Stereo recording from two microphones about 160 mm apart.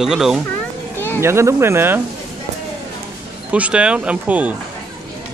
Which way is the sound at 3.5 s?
5° right (ahead or behind).